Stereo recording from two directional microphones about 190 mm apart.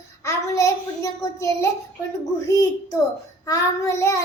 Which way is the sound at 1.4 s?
15° left (ahead or behind).